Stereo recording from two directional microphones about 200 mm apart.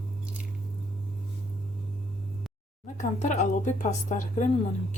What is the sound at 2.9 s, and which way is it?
A woman's voice, 35° left (ahead or behind).